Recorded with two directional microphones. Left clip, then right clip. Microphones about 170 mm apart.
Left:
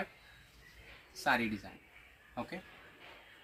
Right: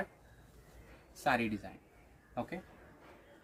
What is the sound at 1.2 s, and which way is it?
Speech, 20° right (ahead or behind).